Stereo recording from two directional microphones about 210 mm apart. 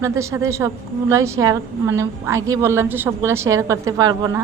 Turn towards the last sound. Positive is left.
turn(degrees=-15)  # may be behind; listen again after turning